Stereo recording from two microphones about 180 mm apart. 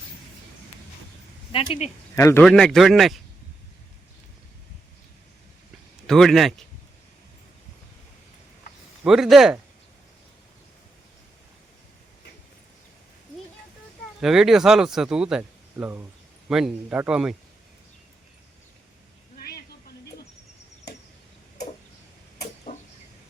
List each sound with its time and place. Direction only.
1.5 s speech: 35° left (ahead or behind)
2.1 s speech: 15° left (ahead or behind)
2.4 s speech: 5° left (ahead or behind)
6.1 s speech: centre (ahead or behind)
9.0 s speech: centre (ahead or behind)
14.2 s speech: centre (ahead or behind)
19.4 s a sound: 60° left (ahead or behind)
22.7 s a sound: 30° left (ahead or behind)